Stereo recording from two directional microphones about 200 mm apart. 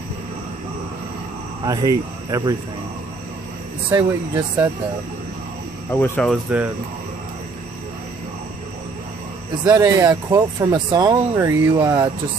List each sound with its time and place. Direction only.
1.6 s speech: 20° right (ahead or behind)
3.9 s speech: 15° right (ahead or behind)
5.9 s speech: 10° left (ahead or behind)
9.8 s speech: 20° right (ahead or behind)